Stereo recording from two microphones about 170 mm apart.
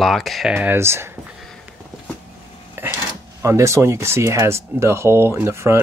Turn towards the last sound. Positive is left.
turn(degrees=-15)  # may be behind; listen again after turning